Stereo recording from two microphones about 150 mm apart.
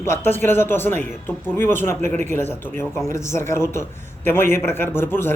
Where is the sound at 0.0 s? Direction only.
15° left (ahead or behind).